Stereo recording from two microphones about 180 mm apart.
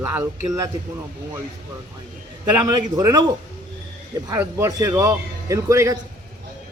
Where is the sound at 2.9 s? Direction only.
20° right (ahead or behind).